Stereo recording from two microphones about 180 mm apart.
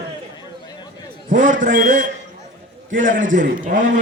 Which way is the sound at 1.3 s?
45° right (ahead or behind).